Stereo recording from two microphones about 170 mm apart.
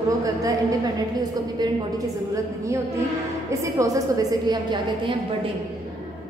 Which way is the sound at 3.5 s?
20° right (ahead or behind).